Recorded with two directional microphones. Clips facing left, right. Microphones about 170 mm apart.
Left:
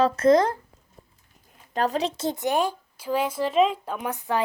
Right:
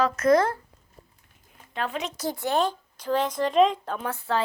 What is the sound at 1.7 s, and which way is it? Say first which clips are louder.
Speech: left 6 dB; 40° left (ahead or behind).